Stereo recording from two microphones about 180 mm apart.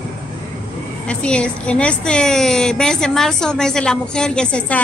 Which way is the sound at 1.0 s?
5° left (ahead or behind).